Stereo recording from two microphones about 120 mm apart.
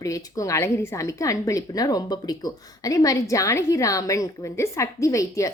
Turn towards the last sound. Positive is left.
turn(degrees=25)  # may be behind; listen again after turning